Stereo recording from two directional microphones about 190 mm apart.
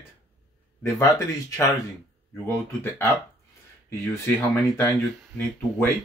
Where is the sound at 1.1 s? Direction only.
15° left (ahead or behind).